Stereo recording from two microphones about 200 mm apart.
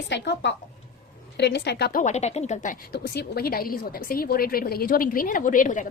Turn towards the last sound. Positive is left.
turn(degrees=40)  # may be behind; listen again after turning